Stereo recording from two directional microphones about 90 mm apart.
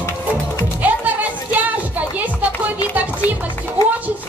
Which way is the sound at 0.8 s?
15° right (ahead or behind).